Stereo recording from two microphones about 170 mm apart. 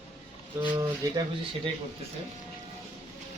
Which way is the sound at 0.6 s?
25° right (ahead or behind).